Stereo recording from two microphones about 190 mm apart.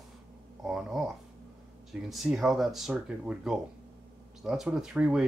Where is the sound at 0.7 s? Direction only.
Centre (ahead or behind).